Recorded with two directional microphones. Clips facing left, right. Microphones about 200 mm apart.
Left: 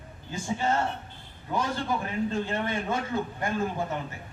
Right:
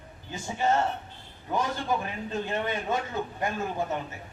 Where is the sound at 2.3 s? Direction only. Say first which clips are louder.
Left 1 dB; 20° right (ahead or behind).